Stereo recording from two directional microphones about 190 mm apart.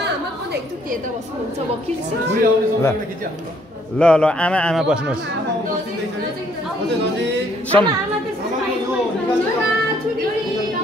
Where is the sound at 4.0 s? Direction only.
5° left (ahead or behind).